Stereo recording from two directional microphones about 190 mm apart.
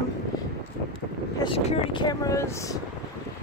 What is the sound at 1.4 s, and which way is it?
Speech, 25° left (ahead or behind).